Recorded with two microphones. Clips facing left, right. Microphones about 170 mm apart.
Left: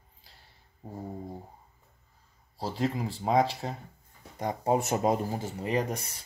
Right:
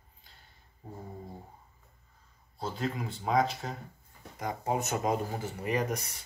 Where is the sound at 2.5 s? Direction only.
35° left (ahead or behind).